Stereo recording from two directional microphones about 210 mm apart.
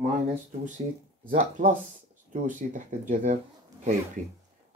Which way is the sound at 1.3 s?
40° right (ahead or behind).